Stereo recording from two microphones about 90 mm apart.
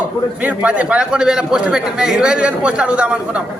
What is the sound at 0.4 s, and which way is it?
A man's voice, 15° right (ahead or behind).